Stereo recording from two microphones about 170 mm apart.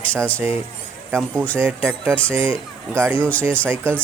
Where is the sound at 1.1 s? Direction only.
5° left (ahead or behind).